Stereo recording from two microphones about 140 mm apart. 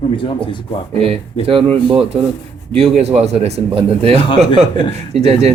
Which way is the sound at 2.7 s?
45° right (ahead or behind).